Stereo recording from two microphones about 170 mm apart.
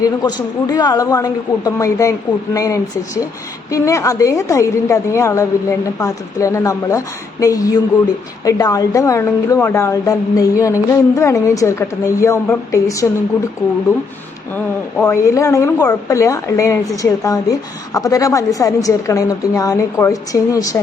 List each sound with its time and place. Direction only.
0.0 s a woman's voice: 25° left (ahead or behind)
14.5 s a woman's voice: 15° left (ahead or behind)